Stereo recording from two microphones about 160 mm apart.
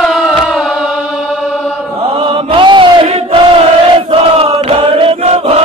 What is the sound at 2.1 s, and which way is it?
Chant, 35° right (ahead or behind).